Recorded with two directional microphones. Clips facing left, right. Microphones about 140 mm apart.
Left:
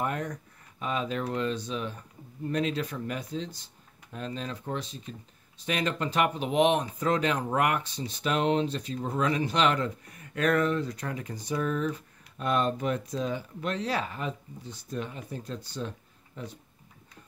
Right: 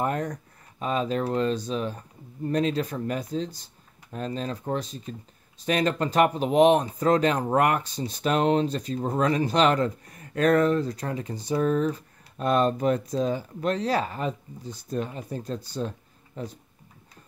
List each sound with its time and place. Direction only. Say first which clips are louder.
0.0 s speech: right 4 dB; 35° right (ahead or behind)